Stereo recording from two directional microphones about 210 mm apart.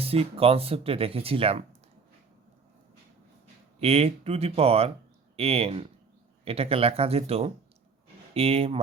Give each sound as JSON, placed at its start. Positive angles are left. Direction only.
{"t": 0.0, "sound": "speech", "side_deg": -25}
{"t": 3.8, "sound": "speech", "side_deg": -30}